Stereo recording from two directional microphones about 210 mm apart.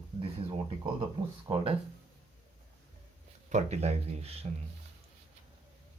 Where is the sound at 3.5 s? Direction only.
30° right (ahead or behind).